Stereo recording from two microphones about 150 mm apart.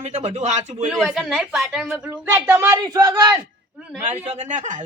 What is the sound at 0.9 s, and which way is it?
A woman's voice, centre (ahead or behind).